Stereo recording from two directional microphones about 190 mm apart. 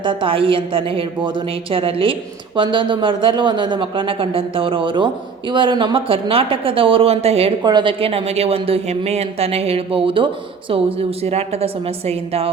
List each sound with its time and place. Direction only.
0.0 s a woman's voice: 25° right (ahead or behind)